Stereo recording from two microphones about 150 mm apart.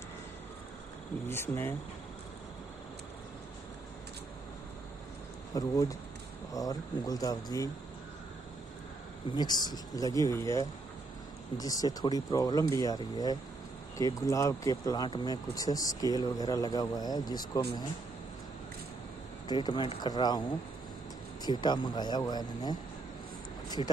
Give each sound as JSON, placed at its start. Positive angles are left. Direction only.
{"t": 1.3, "sound": "speech", "side_deg": 15}
{"t": 5.5, "sound": "speech", "side_deg": 25}
{"t": 9.3, "sound": "speech", "side_deg": 25}
{"t": 19.4, "sound": "speech", "side_deg": 30}
{"t": 21.5, "sound": "speech", "side_deg": 30}